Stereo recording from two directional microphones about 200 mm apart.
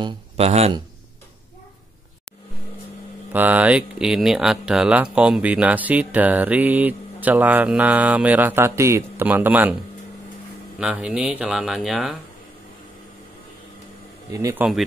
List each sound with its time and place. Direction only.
0.0 s speech: 30° right (ahead or behind)
3.3 s speech: 10° right (ahead or behind)
10.8 s speech: 5° right (ahead or behind)
14.3 s speech: 15° right (ahead or behind)